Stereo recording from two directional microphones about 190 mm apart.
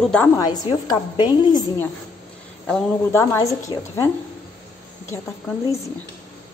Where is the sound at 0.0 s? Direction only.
5° left (ahead or behind).